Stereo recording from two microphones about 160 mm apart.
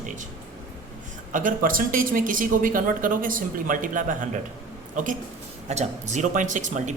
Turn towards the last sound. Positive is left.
turn(degrees=-50)  # may be behind; listen again after turning